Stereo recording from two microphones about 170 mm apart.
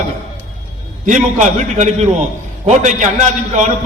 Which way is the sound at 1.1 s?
45° right (ahead or behind).